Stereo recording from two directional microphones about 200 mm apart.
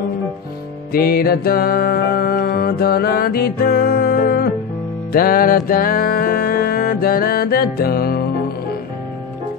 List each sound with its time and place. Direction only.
0.9 s music: 50° left (ahead or behind)